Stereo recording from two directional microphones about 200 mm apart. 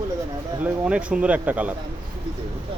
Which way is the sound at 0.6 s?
5° right (ahead or behind).